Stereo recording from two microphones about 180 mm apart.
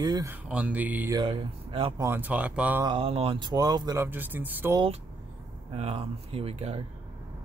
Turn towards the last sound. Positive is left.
turn(degrees=-35)  # may be behind; listen again after turning